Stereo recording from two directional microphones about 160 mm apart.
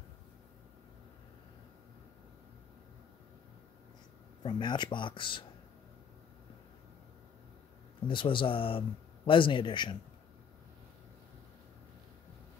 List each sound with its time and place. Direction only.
4.4 s speech: 30° left (ahead or behind)
8.1 s speech: 30° left (ahead or behind)